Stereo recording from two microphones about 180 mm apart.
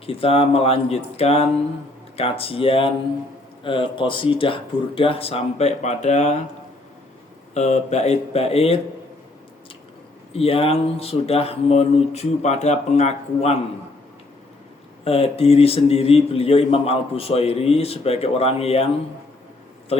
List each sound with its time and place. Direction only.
0.0 s speech: 30° left (ahead or behind)
7.5 s speech: 40° left (ahead or behind)
10.3 s speech: 35° left (ahead or behind)
15.0 s speech: 35° left (ahead or behind)